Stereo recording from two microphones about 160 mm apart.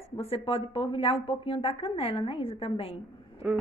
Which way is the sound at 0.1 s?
35° left (ahead or behind).